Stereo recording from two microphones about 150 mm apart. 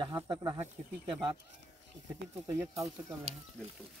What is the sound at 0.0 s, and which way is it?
Speech, 30° right (ahead or behind).